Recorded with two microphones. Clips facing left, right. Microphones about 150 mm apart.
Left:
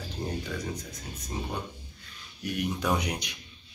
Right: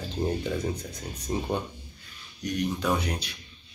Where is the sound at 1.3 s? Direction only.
35° right (ahead or behind).